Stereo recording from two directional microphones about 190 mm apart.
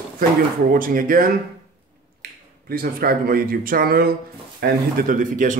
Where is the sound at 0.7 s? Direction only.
45° right (ahead or behind).